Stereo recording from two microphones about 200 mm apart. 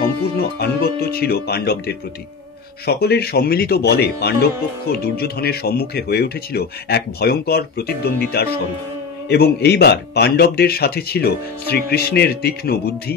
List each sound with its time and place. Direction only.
0.4 s speech: 50° left (ahead or behind)